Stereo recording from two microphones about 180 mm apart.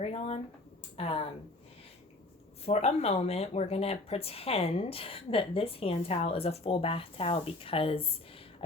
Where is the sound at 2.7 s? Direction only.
35° left (ahead or behind).